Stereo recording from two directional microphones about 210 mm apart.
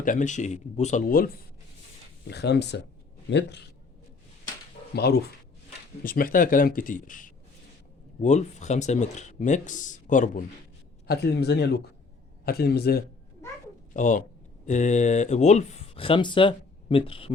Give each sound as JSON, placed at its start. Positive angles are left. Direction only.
{"t": 0.0, "sound": "speech", "side_deg": 40}
{"t": 2.3, "sound": "speech", "side_deg": 55}
{"t": 4.9, "sound": "speech", "side_deg": 50}
{"t": 11.1, "sound": "speech", "side_deg": 50}
{"t": 13.9, "sound": "speech", "side_deg": 35}